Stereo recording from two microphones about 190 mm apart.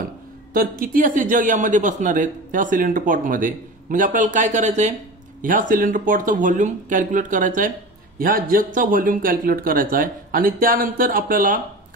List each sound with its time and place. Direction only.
0.0 s speech: 50° right (ahead or behind)